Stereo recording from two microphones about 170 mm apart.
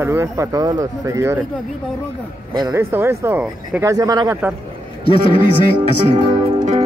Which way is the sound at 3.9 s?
20° right (ahead or behind).